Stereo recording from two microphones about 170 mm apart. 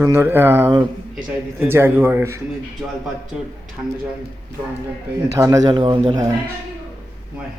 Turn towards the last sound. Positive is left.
turn(degrees=-25)  # may be behind; listen again after turning